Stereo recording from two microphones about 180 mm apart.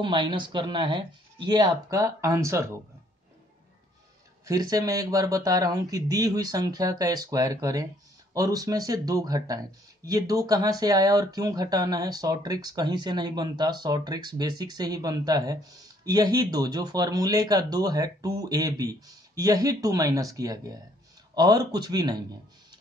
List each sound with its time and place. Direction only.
0.0 s speech: 25° right (ahead or behind)
4.5 s speech: 20° right (ahead or behind)